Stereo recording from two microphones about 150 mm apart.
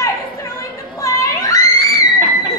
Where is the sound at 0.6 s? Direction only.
20° left (ahead or behind).